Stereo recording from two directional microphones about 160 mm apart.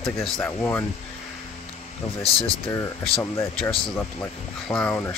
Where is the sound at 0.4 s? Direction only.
15° left (ahead or behind).